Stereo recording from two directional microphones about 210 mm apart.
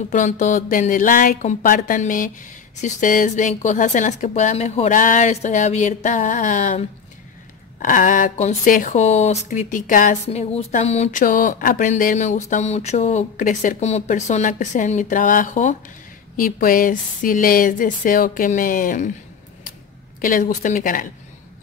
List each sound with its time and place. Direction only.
0.1 s speech: 35° left (ahead or behind)
20.2 s speech: 40° left (ahead or behind)